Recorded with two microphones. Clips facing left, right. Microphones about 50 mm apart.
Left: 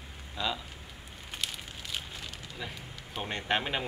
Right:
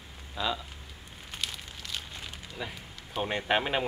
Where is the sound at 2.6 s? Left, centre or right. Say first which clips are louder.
Right 3 dB; centre.